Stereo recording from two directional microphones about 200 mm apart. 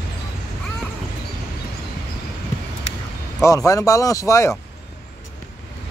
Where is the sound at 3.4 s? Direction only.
15° left (ahead or behind).